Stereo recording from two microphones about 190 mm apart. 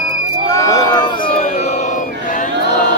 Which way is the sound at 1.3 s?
35° left (ahead or behind).